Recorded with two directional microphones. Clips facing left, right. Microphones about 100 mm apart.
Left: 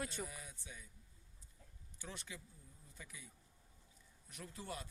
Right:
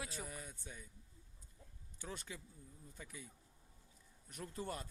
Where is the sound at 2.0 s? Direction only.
45° right (ahead or behind).